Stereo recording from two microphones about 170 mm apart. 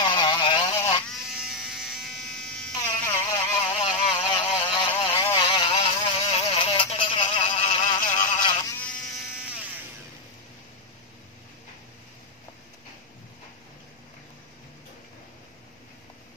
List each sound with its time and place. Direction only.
0.0 s vehicle: 25° left (ahead or behind)
0.7 s toothbrush: 20° left (ahead or behind)
1.3 s electric shaver: 5° right (ahead or behind)
3.6 s vehicle: 30° left (ahead or behind)
8.2 s a sound: 25° left (ahead or behind)
8.7 s electric shaver: 5° left (ahead or behind)
9.3 s a sound: 5° right (ahead or behind)